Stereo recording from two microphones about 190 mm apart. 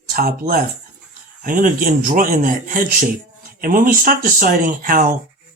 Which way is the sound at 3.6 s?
50° right (ahead or behind).